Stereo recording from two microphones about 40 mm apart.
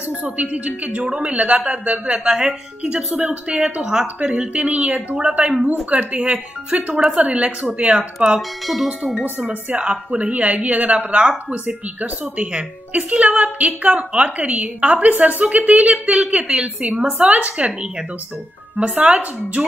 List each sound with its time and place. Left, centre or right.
0.2 s a woman's voice: right
1.0 s speech: right
1.3 s a woman's voice: right
2.0 s speech: right
3.8 s a sound: centre
4.2 s a woman's voice: right
8.4 s speech: centre
8.8 s a sound: centre
9.8 s a woman's voice: right
18.9 s a woman's voice: right